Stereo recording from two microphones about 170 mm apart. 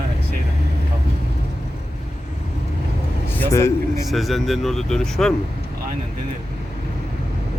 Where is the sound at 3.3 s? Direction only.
15° left (ahead or behind).